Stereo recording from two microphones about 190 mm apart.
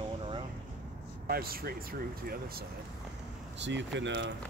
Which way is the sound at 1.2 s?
50° right (ahead or behind).